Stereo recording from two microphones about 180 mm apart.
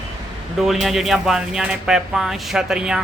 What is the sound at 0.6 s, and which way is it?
Speech, centre (ahead or behind).